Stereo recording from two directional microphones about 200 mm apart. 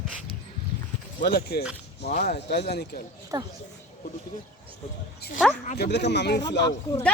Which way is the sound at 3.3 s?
20° right (ahead or behind).